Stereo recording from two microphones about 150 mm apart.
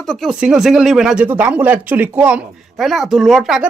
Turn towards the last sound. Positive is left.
turn(degrees=0)  # may be behind; listen again after turning